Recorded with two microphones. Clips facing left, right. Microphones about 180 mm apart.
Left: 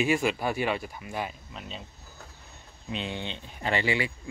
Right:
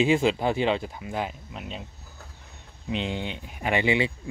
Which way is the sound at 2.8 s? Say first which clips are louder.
Right 4 dB; 15° right (ahead or behind).